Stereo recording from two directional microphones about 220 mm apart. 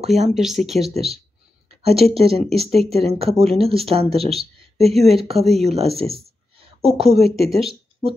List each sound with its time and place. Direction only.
0.0 s speech: 30° right (ahead or behind)
0.3 s speech: centre (ahead or behind)
0.9 s speech: 25° right (ahead or behind)
7.2 s speech: centre (ahead or behind)